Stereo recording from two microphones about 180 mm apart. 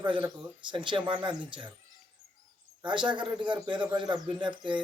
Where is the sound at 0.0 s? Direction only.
25° right (ahead or behind).